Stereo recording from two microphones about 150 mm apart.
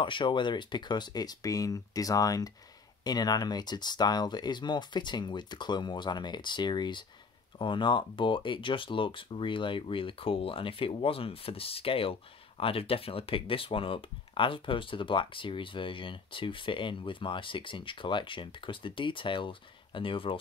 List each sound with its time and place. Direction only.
0.0 s speech: 30° left (ahead or behind)